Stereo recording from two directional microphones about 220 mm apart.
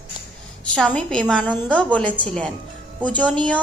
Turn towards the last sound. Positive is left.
turn(degrees=5)  # may be behind; listen again after turning